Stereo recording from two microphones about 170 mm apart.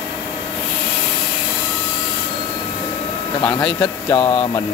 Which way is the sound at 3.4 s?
10° left (ahead or behind).